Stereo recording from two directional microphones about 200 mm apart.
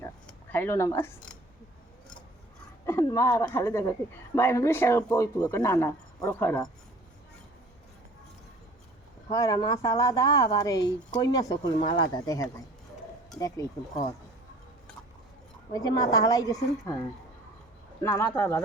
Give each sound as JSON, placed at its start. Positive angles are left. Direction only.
{"t": 0.0, "sound": "a sound", "side_deg": 10}
{"t": 2.8, "sound": "speech", "side_deg": 15}
{"t": 9.3, "sound": "speech", "side_deg": 15}
{"t": 15.7, "sound": "speech", "side_deg": 20}
{"t": 18.0, "sound": "speech", "side_deg": 15}